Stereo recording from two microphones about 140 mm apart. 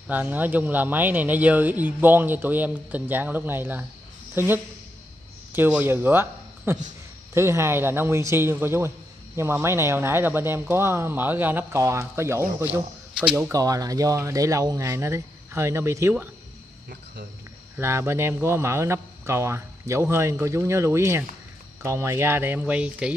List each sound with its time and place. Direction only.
0.1 s a man's voice: 10° right (ahead or behind)
5.8 s a man's voice: 15° right (ahead or behind)
17.7 s a man's voice: 20° right (ahead or behind)